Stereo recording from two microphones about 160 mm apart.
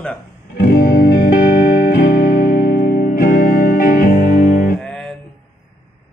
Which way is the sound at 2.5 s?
70° left (ahead or behind).